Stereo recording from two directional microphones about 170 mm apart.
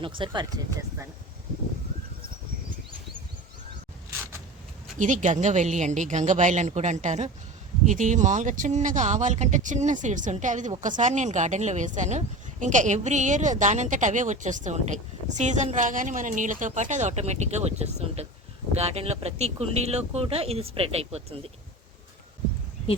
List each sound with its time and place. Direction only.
0.0 s speech: 30° right (ahead or behind)
4.9 s speech: 50° right (ahead or behind)